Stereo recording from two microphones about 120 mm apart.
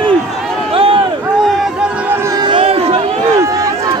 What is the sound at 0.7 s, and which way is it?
Run, 50° right (ahead or behind).